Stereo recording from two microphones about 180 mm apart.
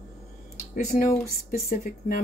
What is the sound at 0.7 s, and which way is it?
Speech, 50° left (ahead or behind).